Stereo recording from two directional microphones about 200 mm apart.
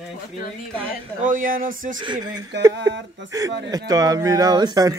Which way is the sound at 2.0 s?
20° right (ahead or behind).